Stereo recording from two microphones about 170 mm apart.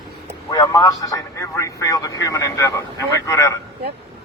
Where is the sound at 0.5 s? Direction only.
20° left (ahead or behind).